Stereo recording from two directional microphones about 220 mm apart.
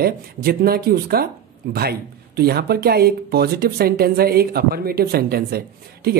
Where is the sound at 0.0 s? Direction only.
45° right (ahead or behind).